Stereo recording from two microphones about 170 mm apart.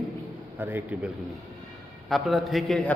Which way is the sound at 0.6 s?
10° right (ahead or behind).